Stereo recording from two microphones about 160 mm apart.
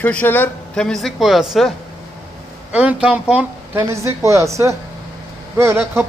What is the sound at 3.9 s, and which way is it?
Speech, 20° right (ahead or behind).